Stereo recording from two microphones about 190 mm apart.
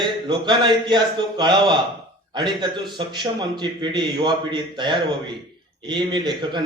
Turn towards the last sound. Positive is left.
turn(degrees=-25)  # may be behind; listen again after turning